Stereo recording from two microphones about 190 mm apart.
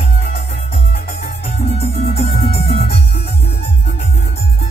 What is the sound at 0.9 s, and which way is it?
Music, 35° left (ahead or behind).